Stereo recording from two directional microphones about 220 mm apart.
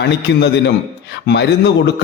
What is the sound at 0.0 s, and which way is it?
A man's voice, 50° left (ahead or behind).